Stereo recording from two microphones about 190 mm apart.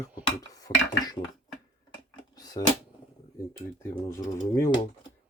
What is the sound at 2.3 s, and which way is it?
Speech, 20° left (ahead or behind).